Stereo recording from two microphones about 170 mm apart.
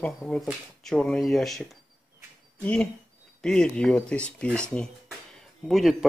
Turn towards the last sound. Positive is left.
turn(degrees=0)  # may be behind; listen again after turning